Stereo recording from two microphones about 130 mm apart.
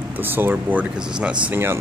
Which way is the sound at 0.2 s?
15° right (ahead or behind).